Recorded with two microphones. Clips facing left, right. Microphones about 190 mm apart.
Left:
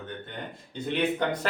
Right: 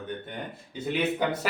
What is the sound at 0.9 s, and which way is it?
Speech, 5° right (ahead or behind).